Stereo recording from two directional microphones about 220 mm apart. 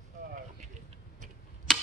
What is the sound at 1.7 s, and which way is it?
Tick-tock, centre (ahead or behind).